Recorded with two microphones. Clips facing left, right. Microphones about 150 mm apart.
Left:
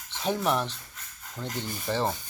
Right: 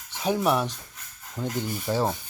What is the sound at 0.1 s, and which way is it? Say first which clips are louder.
Speech: right 3 dB; 10° right (ahead or behind).